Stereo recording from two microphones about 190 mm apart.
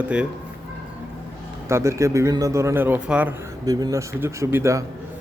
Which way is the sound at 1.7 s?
15° right (ahead or behind).